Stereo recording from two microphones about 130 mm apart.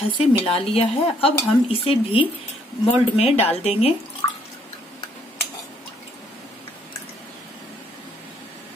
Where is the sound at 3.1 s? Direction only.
55° left (ahead or behind).